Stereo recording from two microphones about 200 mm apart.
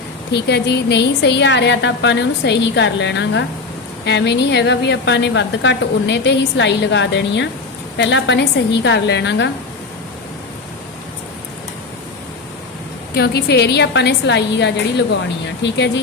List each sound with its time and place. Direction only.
0.3 s a woman's voice: 55° left (ahead or behind)
13.1 s a woman's voice: 55° left (ahead or behind)